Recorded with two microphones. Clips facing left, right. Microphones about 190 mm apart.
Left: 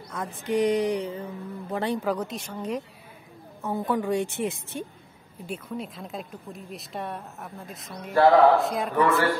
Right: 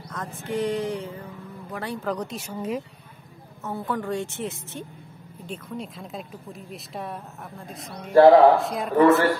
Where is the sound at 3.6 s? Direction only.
15° left (ahead or behind).